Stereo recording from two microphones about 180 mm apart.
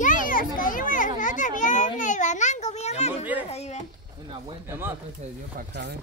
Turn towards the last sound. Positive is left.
turn(degrees=-70)  # may be behind; listen again after turning